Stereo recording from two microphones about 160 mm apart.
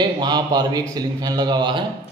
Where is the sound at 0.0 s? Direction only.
25° right (ahead or behind).